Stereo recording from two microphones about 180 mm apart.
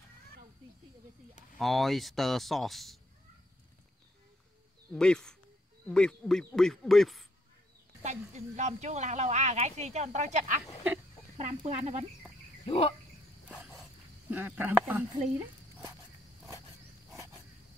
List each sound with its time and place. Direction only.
1.6 s speech: centre (ahead or behind)
4.9 s speech: 5° left (ahead or behind)
8.0 s a woman's voice: 40° right (ahead or behind)
12.6 s a sound: 30° left (ahead or behind)
13.6 s a sound: 5° right (ahead or behind)
14.3 s speech: 10° right (ahead or behind)